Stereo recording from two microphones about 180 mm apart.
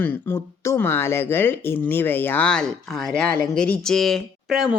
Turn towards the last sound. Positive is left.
turn(degrees=0)  # may be behind; listen again after turning